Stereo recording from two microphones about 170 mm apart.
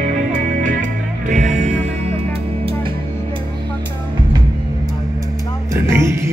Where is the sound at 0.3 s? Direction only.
50° right (ahead or behind).